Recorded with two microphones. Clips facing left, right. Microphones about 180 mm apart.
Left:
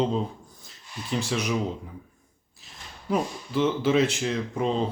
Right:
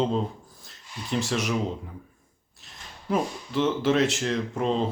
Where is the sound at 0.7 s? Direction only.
Centre (ahead or behind).